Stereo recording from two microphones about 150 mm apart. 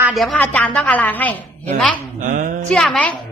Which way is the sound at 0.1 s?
Centre (ahead or behind).